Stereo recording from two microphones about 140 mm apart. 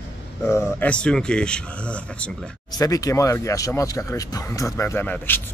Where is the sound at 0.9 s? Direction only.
5° left (ahead or behind).